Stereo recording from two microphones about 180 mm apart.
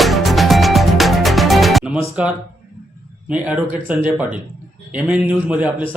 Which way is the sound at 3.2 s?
5° right (ahead or behind).